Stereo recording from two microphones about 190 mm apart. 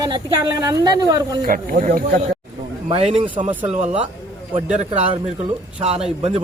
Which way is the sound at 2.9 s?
35° right (ahead or behind).